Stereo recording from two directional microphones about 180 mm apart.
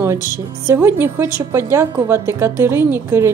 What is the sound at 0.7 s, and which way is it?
Speech, 10° right (ahead or behind).